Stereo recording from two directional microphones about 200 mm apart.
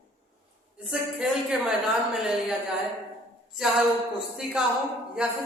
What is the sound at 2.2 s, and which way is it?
Speech, 5° right (ahead or behind).